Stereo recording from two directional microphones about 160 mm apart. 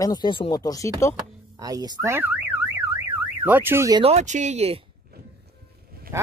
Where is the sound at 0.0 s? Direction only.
25° left (ahead or behind).